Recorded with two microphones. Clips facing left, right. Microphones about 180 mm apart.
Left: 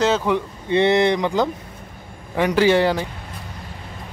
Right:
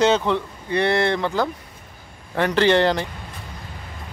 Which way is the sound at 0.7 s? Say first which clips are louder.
Left 4 dB; 20° left (ahead or behind).